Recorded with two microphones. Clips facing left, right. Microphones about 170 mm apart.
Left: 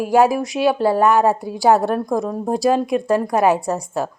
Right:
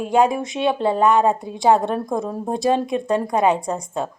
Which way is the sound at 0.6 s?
25° right (ahead or behind).